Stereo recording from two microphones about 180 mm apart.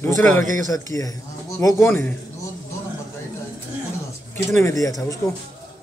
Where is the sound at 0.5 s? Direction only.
20° left (ahead or behind).